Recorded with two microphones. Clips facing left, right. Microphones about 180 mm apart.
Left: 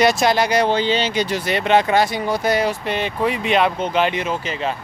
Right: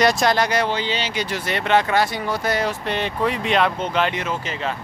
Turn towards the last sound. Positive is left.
turn(degrees=15)  # may be behind; listen again after turning